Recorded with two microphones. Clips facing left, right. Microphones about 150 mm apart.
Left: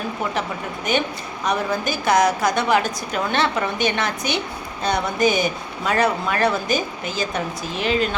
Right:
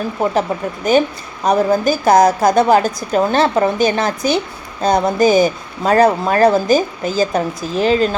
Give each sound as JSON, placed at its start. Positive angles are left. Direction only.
{"t": 0.2, "sound": "speech", "side_deg": -35}
{"t": 1.5, "sound": "speech", "side_deg": -40}